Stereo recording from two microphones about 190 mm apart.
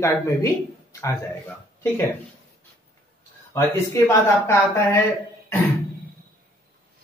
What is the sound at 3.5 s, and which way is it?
Speech, 15° left (ahead or behind).